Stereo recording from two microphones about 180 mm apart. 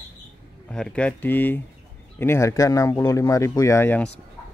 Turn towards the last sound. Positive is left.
turn(degrees=10)  # may be behind; listen again after turning